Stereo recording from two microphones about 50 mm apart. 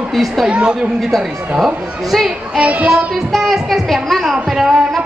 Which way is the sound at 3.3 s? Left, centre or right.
Centre.